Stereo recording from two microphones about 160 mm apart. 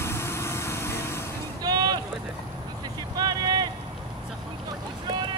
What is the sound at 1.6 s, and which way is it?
Boat, 25° right (ahead or behind).